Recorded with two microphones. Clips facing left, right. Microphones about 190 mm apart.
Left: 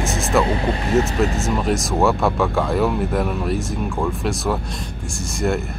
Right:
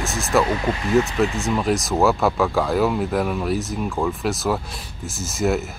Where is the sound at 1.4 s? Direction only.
Centre (ahead or behind).